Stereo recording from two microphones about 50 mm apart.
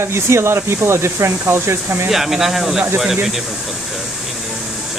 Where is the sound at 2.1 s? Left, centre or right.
Centre.